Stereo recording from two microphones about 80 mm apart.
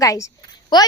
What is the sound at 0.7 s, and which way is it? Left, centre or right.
Speech, left.